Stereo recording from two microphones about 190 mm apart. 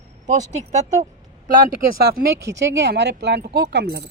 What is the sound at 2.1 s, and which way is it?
Speech, 55° right (ahead or behind).